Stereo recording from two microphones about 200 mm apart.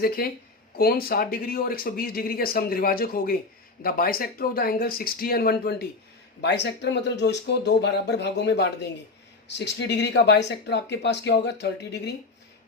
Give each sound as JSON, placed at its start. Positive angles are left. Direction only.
{"t": 0.8, "sound": "speech", "side_deg": 50}